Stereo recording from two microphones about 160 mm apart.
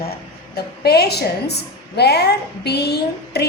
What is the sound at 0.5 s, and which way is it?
A woman's voice, 80° left.